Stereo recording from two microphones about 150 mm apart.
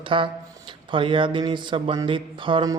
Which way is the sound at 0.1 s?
35° right (ahead or behind).